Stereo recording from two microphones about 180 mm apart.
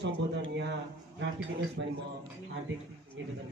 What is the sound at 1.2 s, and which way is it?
Speech, 85° right.